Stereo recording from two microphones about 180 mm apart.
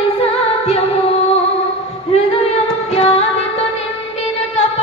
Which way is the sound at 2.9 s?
35° left (ahead or behind).